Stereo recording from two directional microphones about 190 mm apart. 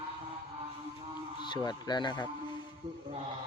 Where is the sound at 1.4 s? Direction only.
25° left (ahead or behind).